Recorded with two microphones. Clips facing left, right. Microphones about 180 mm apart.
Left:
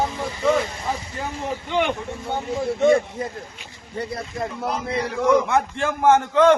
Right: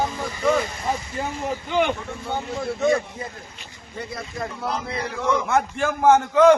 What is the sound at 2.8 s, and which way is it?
Speech, 30° left (ahead or behind).